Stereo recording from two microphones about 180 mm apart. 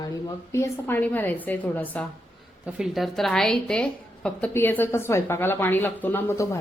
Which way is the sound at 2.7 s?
Centre (ahead or behind).